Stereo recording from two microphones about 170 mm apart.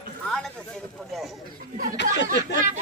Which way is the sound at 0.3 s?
Centre (ahead or behind).